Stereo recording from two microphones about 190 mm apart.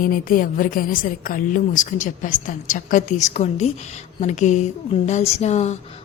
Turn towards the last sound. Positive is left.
turn(degrees=35)  # may be behind; listen again after turning